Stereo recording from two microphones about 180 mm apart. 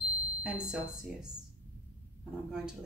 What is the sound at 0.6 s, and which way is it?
Speech, 5° right (ahead or behind).